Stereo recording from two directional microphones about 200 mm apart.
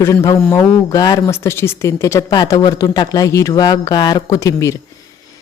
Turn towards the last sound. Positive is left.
turn(degrees=15)  # may be behind; listen again after turning